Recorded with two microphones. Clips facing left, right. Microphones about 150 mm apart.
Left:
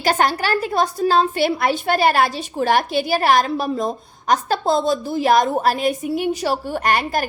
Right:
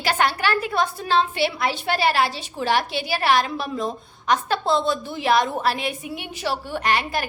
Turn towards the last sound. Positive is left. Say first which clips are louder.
# left 3 dB
turn(degrees=45)  # may be behind; listen again after turning